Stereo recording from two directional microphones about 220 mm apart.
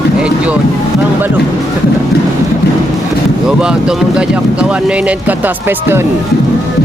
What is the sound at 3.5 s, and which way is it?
Speech, 5° right (ahead or behind).